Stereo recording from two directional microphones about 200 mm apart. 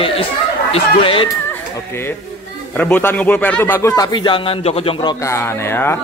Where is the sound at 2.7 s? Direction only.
10° left (ahead or behind); by 5.1 s 25° left (ahead or behind).